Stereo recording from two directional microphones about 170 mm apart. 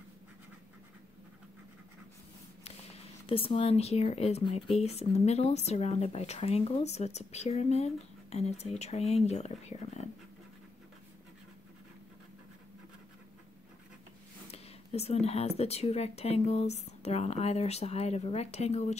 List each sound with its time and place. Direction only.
2.6 s speech: 35° left (ahead or behind)
14.5 s speech: 35° left (ahead or behind)